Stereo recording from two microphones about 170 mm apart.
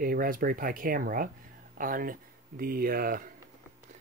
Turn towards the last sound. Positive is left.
turn(degrees=-55)  # may be behind; listen again after turning